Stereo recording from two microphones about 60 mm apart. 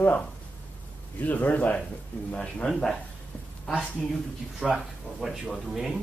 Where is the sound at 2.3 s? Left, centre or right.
Centre.